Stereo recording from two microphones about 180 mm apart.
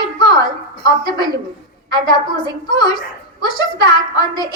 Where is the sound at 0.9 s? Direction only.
25° left (ahead or behind).